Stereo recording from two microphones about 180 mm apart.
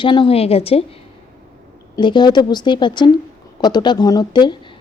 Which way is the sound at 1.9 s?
25° left (ahead or behind).